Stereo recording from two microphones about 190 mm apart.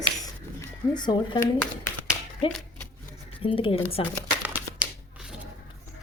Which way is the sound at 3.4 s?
30° left (ahead or behind).